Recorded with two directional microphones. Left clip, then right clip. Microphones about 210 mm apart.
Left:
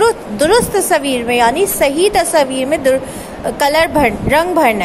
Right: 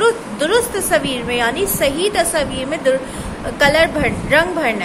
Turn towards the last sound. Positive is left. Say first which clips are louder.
# left 4 dB
turn(degrees=25)  # may be behind; listen again after turning